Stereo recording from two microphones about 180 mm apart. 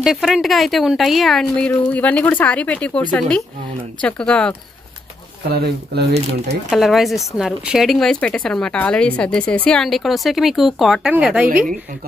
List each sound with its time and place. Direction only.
0.0 s speech: centre (ahead or behind)
5.4 s speech: 60° right (ahead or behind)
6.7 s speech: centre (ahead or behind)